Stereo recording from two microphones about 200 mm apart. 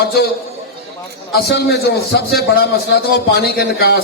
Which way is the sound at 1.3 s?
50° left (ahead or behind).